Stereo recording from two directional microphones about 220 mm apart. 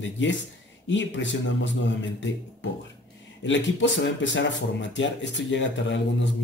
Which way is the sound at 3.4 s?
55° left (ahead or behind).